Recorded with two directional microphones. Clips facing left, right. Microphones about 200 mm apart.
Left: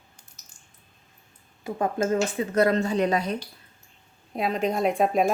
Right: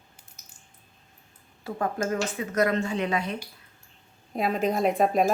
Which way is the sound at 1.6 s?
20° left (ahead or behind).